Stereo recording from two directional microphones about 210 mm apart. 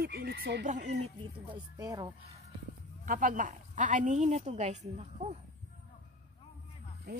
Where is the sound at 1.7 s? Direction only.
20° right (ahead or behind).